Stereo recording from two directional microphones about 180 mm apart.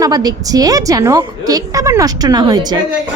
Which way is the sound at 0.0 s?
20° right (ahead or behind).